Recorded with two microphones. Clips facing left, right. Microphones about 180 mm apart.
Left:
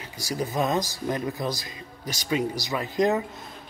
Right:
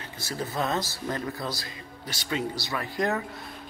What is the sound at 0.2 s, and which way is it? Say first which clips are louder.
Speech: left 4 dB; 15° left (ahead or behind).